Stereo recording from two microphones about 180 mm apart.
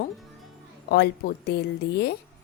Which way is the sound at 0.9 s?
60° left (ahead or behind).